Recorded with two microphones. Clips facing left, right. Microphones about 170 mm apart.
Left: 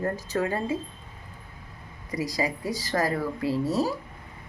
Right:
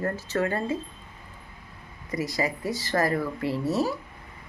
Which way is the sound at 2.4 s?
10° left (ahead or behind).